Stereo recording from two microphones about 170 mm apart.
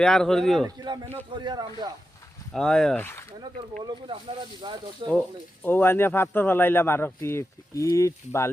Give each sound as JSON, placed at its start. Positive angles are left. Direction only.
{"t": 0.0, "sound": "speech", "side_deg": 5}
{"t": 1.1, "sound": "speech", "side_deg": -25}
{"t": 2.5, "sound": "speech", "side_deg": 5}
{"t": 3.8, "sound": "speech", "side_deg": -30}
{"t": 5.6, "sound": "speech", "side_deg": 10}